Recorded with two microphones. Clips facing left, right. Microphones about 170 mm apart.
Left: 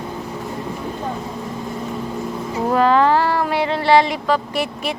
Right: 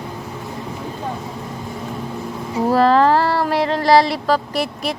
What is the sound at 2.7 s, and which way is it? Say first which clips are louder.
Speech: right 1 dB; 35° right (ahead or behind).